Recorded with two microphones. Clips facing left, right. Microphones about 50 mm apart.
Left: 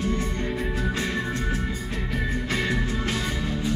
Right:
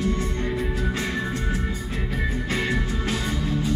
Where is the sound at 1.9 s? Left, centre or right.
Right.